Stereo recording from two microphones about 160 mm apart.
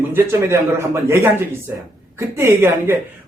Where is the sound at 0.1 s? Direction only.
15° right (ahead or behind).